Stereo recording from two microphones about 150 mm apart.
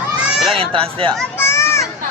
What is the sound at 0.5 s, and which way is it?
Speech, 40° right (ahead or behind).